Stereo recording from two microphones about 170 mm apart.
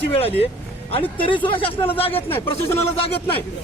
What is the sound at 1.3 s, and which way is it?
Speech, 30° left (ahead or behind).